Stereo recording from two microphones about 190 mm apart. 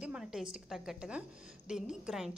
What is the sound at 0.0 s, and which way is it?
A woman's voice, 5° right (ahead or behind).